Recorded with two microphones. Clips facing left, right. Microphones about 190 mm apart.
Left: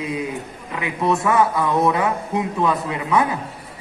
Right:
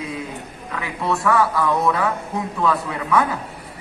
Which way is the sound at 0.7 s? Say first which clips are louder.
Left 3 dB; 20° left (ahead or behind).